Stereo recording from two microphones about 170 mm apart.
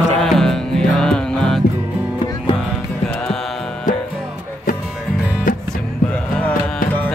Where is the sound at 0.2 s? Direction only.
Centre (ahead or behind).